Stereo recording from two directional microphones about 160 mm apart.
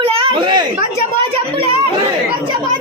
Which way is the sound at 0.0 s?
30° right (ahead or behind).